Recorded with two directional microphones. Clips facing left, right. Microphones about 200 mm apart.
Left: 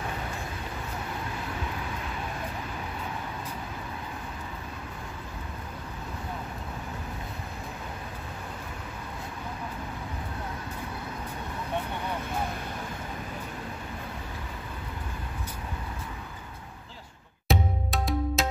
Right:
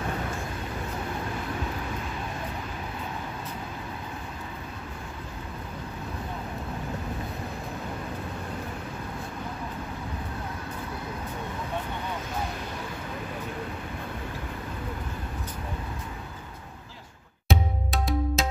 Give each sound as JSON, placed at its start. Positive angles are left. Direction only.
{"t": 17.5, "sound": "music", "side_deg": 0}